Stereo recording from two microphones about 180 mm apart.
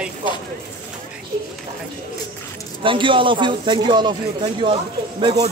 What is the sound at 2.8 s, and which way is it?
A man's voice, 30° right (ahead or behind).